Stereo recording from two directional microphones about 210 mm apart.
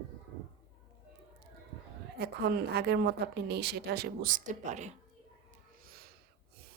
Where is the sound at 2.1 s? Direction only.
50° right (ahead or behind); by 4.9 s 35° right (ahead or behind).